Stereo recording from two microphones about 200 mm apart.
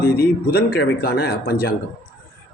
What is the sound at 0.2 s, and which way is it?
A man's voice, 50° left (ahead or behind).